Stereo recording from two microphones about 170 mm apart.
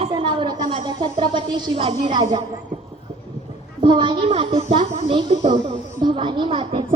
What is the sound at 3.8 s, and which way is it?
A child's voice, 25° right (ahead or behind).